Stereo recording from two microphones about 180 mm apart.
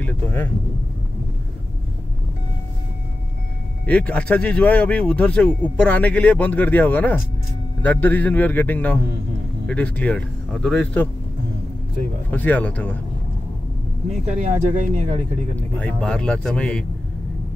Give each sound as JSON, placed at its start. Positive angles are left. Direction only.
{"t": 0.0, "sound": "vehicle", "side_deg": 10}
{"t": 3.8, "sound": "speech", "side_deg": 5}
{"t": 12.3, "sound": "speech", "side_deg": 10}
{"t": 14.2, "sound": "speech", "side_deg": -40}
{"t": 15.5, "sound": "speech", "side_deg": 10}